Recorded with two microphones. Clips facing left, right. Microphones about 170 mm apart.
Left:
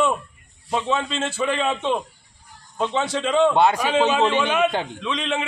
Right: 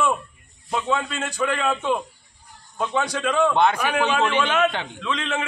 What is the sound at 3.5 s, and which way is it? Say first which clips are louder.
A man's voice: left 2 dB; 10° left (ahead or behind).